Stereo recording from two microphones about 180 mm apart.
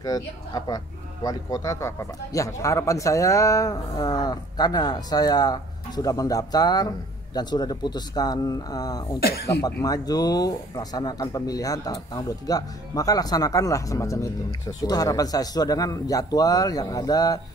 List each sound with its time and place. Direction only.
0.0 s speech: 20° left (ahead or behind)